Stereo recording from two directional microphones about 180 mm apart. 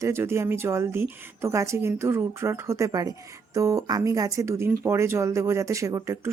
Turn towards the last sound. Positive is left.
turn(degrees=-15)  # may be behind; listen again after turning